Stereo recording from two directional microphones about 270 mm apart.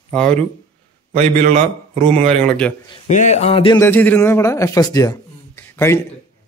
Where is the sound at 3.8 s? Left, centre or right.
Centre.